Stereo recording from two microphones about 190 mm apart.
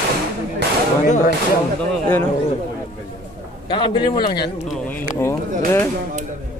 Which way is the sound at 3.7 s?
25° left (ahead or behind).